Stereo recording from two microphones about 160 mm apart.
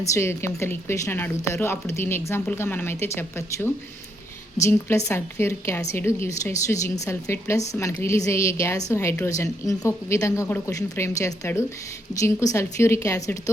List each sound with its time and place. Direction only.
0.1 s a woman's voice: 15° left (ahead or behind)
4.9 s a woman's voice: 15° left (ahead or behind)